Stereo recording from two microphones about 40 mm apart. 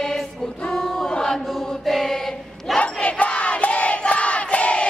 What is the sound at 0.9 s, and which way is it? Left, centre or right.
Choir, centre.